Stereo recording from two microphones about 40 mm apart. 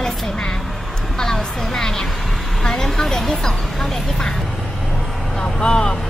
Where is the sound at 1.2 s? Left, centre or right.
Centre.